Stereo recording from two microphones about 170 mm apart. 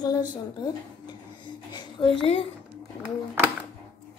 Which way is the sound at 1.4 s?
25° left (ahead or behind).